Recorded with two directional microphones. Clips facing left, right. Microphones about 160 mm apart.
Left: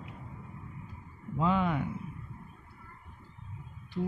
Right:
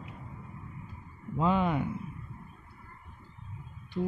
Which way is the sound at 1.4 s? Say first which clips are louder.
Right 1 dB; 20° right (ahead or behind).